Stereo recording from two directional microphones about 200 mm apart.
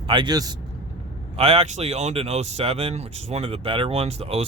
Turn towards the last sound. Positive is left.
turn(degrees=-30)  # may be behind; listen again after turning